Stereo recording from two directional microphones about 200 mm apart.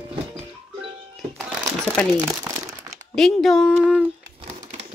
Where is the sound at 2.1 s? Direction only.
15° right (ahead or behind).